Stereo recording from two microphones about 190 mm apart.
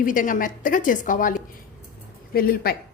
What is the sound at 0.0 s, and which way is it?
A woman's voice, 45° left (ahead or behind).